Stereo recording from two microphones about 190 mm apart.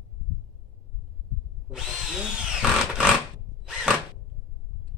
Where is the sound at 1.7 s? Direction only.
5° right (ahead or behind).